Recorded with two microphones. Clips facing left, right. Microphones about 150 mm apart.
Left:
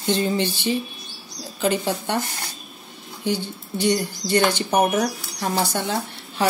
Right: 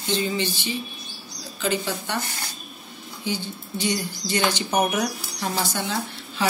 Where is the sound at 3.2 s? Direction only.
65° left (ahead or behind).